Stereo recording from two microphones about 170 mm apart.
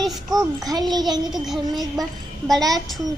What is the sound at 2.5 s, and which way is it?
Speech, centre (ahead or behind).